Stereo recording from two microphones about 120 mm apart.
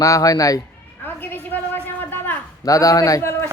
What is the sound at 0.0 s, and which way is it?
Speech, 30° left (ahead or behind).